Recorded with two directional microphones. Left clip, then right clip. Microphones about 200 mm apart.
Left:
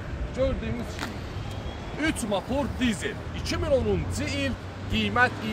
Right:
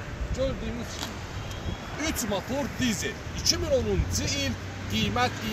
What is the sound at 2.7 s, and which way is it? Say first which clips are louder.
Speech: left 1 dB; 20° right (ahead or behind).